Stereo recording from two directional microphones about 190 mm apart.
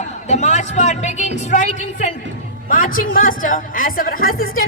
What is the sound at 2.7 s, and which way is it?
A woman's voice, 50° left (ahead or behind).